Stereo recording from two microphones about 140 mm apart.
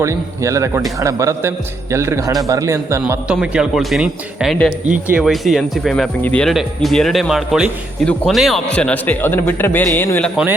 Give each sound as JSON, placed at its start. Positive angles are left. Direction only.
{"t": 0.0, "sound": "a man's voice", "side_deg": -20}
{"t": 3.4, "sound": "a man's voice", "side_deg": -5}